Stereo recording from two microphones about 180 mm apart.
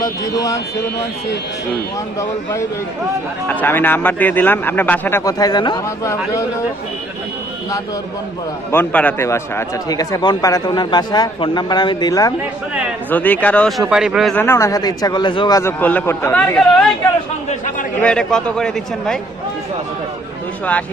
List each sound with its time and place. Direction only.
0.0 s a man's voice: 20° left (ahead or behind)
3.5 s a man's voice: 10° left (ahead or behind)
8.7 s speech: 10° left (ahead or behind)
13.1 s speech: 10° left (ahead or behind)
14.3 s speech: 15° left (ahead or behind)
15.8 s a man's voice: 10° left (ahead or behind)
18.0 s speech: 5° left (ahead or behind)